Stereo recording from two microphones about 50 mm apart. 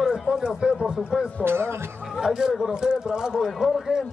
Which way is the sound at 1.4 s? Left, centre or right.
Right.